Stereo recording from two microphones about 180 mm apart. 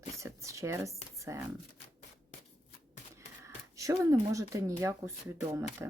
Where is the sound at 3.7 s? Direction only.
15° right (ahead or behind).